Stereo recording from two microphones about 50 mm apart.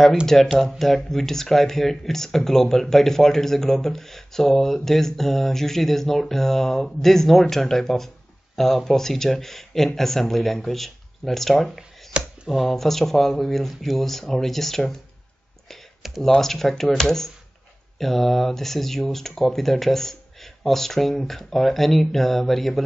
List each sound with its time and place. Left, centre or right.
0.6 s speech: centre
12.1 s a sound: right
12.4 s speech: centre
16.2 s speech: centre